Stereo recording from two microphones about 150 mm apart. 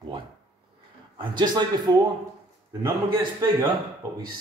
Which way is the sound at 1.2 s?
30° right (ahead or behind).